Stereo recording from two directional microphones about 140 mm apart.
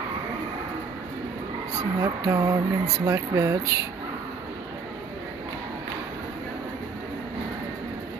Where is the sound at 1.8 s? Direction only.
25° right (ahead or behind).